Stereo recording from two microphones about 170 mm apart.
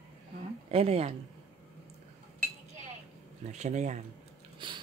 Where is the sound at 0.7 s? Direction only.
35° right (ahead or behind).